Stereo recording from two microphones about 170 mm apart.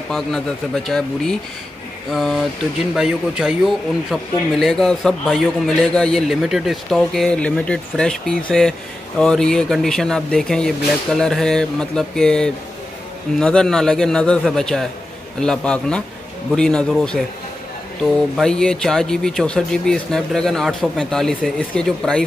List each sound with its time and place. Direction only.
0.8 s a man's voice: 5° left (ahead or behind)
18.3 s a man's voice: 5° left (ahead or behind)